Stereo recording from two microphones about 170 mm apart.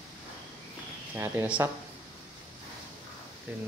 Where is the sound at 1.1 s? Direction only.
15° right (ahead or behind).